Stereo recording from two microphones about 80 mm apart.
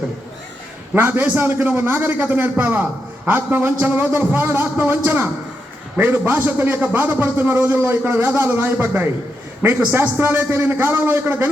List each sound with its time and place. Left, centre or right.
0.9 s a man's voice: right